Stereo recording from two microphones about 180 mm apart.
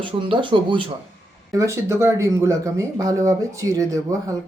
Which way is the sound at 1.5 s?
15° right (ahead or behind).